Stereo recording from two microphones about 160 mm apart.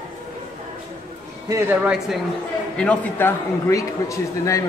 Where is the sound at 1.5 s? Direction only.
10° right (ahead or behind).